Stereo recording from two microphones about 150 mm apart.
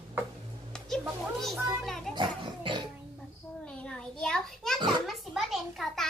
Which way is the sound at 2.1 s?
30° right (ahead or behind).